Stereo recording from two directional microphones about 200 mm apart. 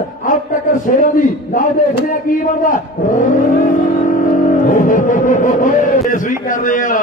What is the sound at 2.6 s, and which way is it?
Speech, 40° left (ahead or behind).